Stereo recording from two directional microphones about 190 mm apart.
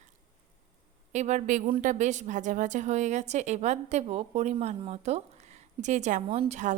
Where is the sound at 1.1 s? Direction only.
40° right (ahead or behind).